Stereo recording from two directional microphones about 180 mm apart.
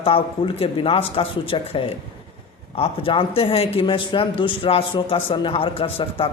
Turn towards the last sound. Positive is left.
turn(degrees=30)  # may be behind; listen again after turning